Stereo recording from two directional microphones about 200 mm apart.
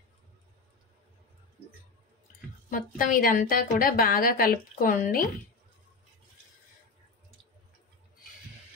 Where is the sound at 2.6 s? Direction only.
45° left (ahead or behind).